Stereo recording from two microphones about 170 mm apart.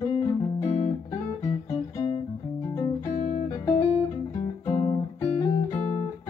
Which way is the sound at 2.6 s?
20° left (ahead or behind).